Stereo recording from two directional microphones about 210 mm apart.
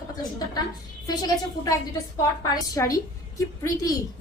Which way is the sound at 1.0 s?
20° left (ahead or behind).